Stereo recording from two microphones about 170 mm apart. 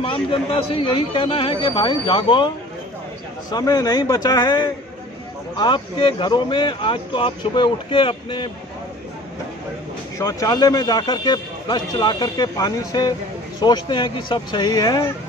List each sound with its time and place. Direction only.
0.0 s a man's voice: 30° left (ahead or behind)
10.1 s a man's voice: 20° left (ahead or behind)